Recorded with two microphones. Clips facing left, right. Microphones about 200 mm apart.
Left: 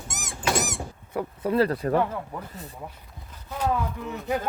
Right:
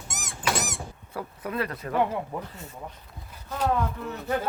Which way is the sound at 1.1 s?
30° left (ahead or behind).